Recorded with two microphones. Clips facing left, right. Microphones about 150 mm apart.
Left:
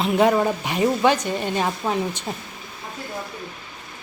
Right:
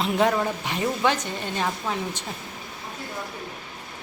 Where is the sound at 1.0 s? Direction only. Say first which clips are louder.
Left 5 dB; 15° left (ahead or behind).